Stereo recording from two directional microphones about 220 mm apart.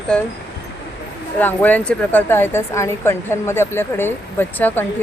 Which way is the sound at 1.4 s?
10° left (ahead or behind).